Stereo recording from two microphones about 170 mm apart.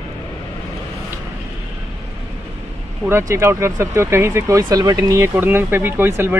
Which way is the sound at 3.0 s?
15° right (ahead or behind).